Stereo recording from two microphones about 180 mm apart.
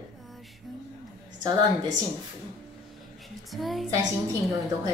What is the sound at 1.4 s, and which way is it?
Speech, 20° right (ahead or behind).